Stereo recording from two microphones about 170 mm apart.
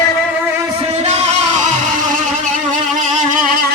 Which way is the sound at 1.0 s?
40° right (ahead or behind).